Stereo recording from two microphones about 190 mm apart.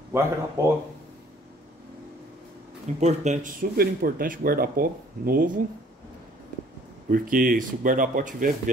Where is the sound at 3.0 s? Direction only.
40° right (ahead or behind).